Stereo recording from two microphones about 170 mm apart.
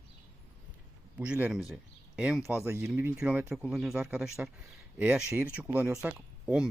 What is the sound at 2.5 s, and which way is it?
Speech, 15° right (ahead or behind).